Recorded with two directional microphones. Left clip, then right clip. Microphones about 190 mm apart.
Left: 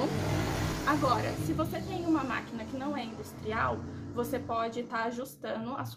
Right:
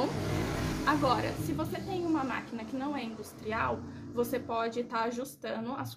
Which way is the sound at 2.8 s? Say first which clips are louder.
Even; 30° right (ahead or behind).